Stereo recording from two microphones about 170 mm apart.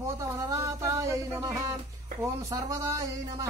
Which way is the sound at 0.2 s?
20° right (ahead or behind).